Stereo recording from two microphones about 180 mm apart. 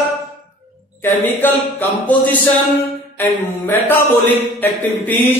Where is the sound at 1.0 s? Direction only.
10° left (ahead or behind).